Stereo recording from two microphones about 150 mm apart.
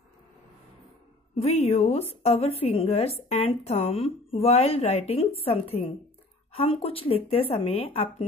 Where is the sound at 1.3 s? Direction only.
45° left (ahead or behind).